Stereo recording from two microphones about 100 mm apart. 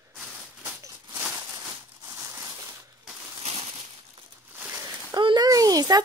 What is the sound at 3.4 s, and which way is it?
Crushing, 85° right.